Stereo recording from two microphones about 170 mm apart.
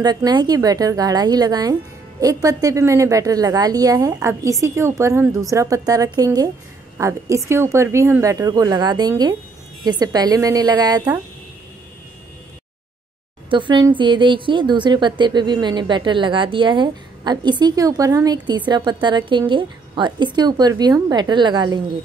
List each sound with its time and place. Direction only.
0.0 s a woman's voice: 25° right (ahead or behind)
13.5 s a woman's voice: 30° right (ahead or behind)